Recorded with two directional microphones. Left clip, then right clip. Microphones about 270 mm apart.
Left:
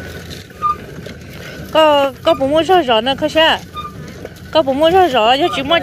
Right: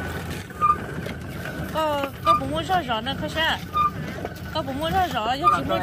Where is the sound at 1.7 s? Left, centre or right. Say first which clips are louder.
Left 14 dB; left.